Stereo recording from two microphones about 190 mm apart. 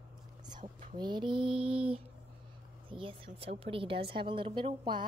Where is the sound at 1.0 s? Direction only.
25° right (ahead or behind).